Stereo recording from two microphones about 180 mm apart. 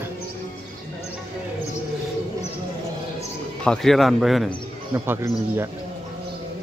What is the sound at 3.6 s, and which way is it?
Speech, 5° left (ahead or behind).